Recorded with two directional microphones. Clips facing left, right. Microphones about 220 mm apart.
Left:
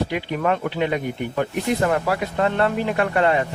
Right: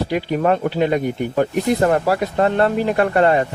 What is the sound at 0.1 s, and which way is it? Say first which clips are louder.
Speech: right 5 dB; 40° right (ahead or behind).